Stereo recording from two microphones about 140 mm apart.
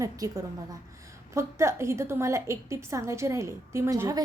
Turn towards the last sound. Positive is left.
turn(degrees=-25)  # may be behind; listen again after turning